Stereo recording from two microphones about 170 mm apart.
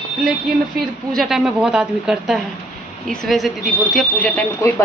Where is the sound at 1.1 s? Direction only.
5° right (ahead or behind).